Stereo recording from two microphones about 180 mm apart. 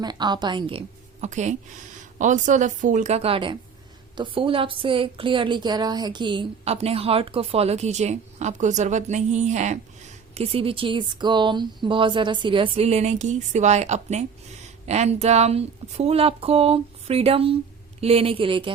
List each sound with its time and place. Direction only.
0.0 s a woman's voice: 25° right (ahead or behind)